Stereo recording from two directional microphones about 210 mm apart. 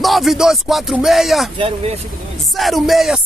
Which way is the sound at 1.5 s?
25° right (ahead or behind).